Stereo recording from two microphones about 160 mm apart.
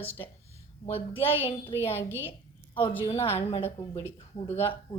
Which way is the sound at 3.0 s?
35° left (ahead or behind).